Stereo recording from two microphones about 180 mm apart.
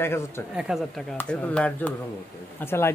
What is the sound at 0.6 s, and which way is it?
Speech, centre (ahead or behind).